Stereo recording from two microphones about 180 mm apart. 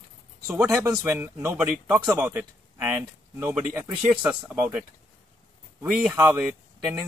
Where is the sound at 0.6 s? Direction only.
15° right (ahead or behind).